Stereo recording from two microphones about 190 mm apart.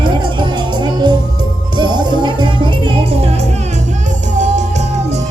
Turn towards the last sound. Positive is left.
turn(degrees=-35)  # may be behind; listen again after turning